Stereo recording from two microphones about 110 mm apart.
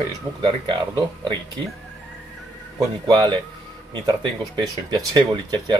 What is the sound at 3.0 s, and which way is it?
Speech, 45° right (ahead or behind).